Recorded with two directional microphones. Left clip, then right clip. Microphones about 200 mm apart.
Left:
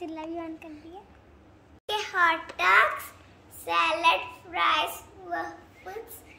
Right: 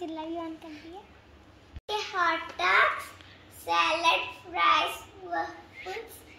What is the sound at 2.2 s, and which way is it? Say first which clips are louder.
Speech: left 4 dB; 30° left (ahead or behind).